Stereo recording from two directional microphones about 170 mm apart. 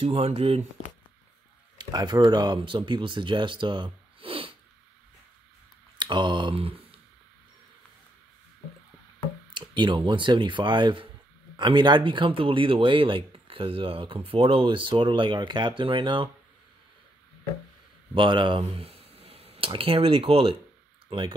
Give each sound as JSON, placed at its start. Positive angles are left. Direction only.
{"t": 0.0, "sound": "speech", "side_deg": -35}
{"t": 1.8, "sound": "speech", "side_deg": -25}
{"t": 5.9, "sound": "speech", "side_deg": -25}
{"t": 9.5, "sound": "speech", "side_deg": -25}
{"t": 18.1, "sound": "speech", "side_deg": -30}